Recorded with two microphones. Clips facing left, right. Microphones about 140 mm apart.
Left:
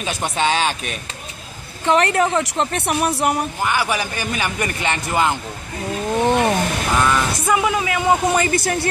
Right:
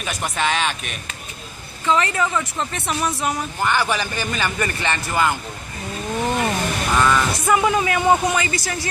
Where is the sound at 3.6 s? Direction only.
10° left (ahead or behind).